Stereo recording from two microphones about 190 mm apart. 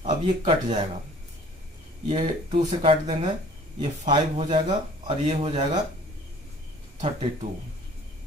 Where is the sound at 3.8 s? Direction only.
25° right (ahead or behind).